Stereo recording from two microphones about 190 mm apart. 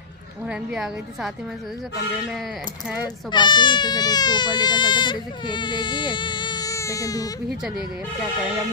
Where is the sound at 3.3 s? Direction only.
25° left (ahead or behind).